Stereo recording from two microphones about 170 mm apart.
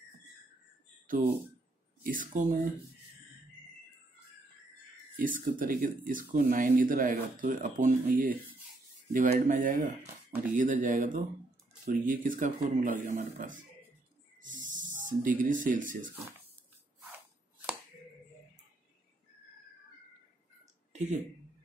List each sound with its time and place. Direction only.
1.0 s a sound: 50° right (ahead or behind)
2.0 s speech: 55° right (ahead or behind)
5.1 s speech: 55° right (ahead or behind)
20.9 s speech: 45° right (ahead or behind)